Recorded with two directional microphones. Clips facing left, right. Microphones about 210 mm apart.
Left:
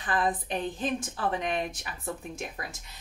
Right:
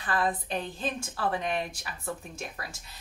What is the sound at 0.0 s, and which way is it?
A woman's voice, 20° left (ahead or behind).